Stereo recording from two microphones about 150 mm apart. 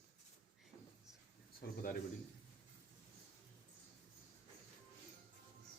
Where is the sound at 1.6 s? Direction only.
90° left.